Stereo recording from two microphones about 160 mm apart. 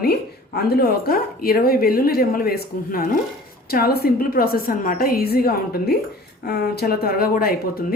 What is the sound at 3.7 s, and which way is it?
A woman's voice, 70° left (ahead or behind).